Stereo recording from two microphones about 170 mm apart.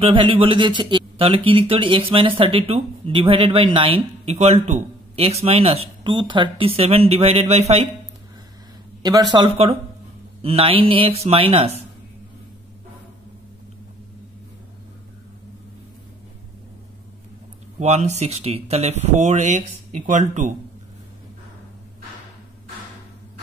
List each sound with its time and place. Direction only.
0.0 s speech: 30° right (ahead or behind)
9.0 s speech: 25° right (ahead or behind)
17.7 s speech: 40° right (ahead or behind)